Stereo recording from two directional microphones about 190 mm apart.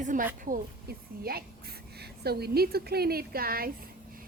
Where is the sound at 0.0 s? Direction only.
45° right (ahead or behind).